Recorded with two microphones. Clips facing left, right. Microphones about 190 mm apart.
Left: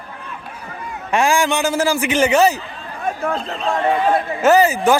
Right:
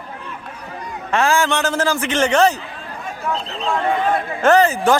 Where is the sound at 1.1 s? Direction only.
10° left (ahead or behind).